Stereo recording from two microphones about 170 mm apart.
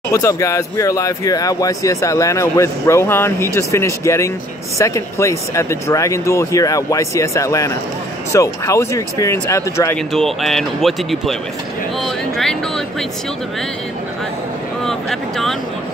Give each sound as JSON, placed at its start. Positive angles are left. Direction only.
{"t": 0.1, "sound": "speech", "side_deg": 20}
{"t": 9.9, "sound": "speech", "side_deg": 0}
{"t": 12.0, "sound": "a sound", "side_deg": 5}
{"t": 14.9, "sound": "speech", "side_deg": 0}